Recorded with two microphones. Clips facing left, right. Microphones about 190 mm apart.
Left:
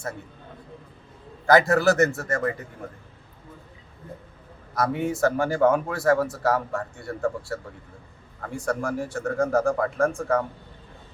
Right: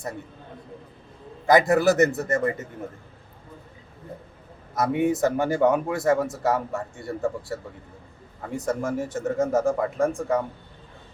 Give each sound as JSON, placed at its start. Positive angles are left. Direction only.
{"t": 1.5, "sound": "a man's voice", "side_deg": -20}
{"t": 4.7, "sound": "a man's voice", "side_deg": -20}